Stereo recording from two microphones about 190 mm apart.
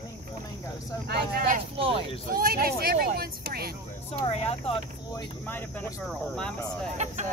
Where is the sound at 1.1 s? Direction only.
55° right (ahead or behind).